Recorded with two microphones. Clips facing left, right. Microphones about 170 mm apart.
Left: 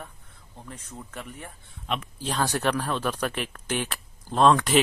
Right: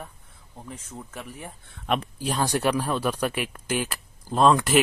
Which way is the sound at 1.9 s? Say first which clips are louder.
Right 5 dB; 55° right (ahead or behind).